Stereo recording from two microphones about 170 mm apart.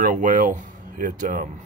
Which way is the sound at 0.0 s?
50° right (ahead or behind).